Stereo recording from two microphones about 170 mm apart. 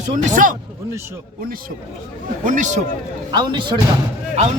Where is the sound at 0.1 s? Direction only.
50° right (ahead or behind).